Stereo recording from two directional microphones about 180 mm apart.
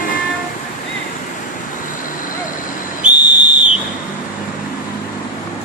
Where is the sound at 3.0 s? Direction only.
40° right (ahead or behind).